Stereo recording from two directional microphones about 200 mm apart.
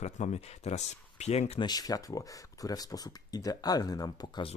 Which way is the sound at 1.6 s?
20° left (ahead or behind).